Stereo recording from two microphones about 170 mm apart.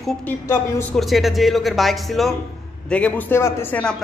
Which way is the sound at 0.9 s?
Centre (ahead or behind).